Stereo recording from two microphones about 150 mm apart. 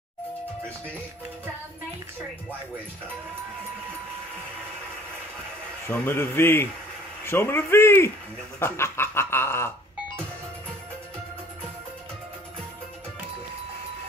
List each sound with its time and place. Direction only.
5.9 s speech: 15° left (ahead or behind)